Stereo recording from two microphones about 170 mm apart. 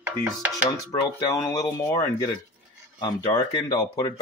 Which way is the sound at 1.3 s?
20° left (ahead or behind).